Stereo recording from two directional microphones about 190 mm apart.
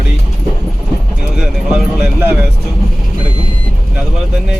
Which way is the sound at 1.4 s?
5° right (ahead or behind).